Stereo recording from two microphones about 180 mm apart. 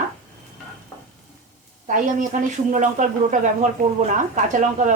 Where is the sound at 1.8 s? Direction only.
45° right (ahead or behind).